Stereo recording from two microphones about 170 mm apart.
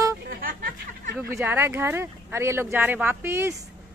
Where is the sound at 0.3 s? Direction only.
60° right (ahead or behind).